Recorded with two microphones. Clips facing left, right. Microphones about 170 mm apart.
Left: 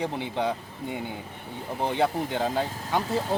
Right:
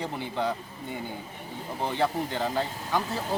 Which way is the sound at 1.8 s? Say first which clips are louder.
Left 2 dB; 20° left (ahead or behind).